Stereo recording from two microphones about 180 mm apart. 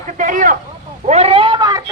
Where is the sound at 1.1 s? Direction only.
35° right (ahead or behind).